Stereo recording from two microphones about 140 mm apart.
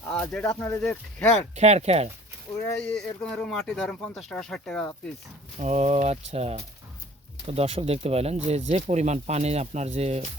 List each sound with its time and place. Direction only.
0.1 s speech: 10° left (ahead or behind)
1.5 s speech: 50° right (ahead or behind)
2.8 s speech: 5° left (ahead or behind)
5.5 s speech: 50° right (ahead or behind)